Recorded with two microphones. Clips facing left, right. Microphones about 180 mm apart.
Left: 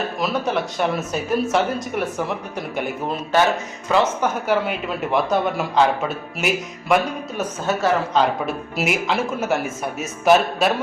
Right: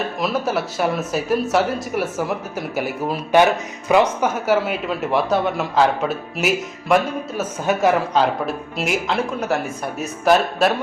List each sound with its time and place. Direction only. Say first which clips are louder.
0.2 s speech: right 1 dB; centre (ahead or behind)
3.8 s speech: right 3 dB; 15° right (ahead or behind)
7.7 s speech: right 3 dB; 15° right (ahead or behind)
8.4 s speech: even; centre (ahead or behind)